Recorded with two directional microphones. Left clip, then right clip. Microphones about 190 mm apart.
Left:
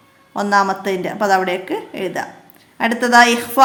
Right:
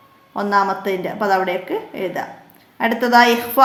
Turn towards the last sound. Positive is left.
turn(degrees=15)  # may be behind; listen again after turning